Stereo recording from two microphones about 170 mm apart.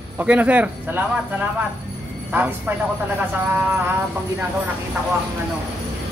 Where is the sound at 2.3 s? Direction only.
10° right (ahead or behind).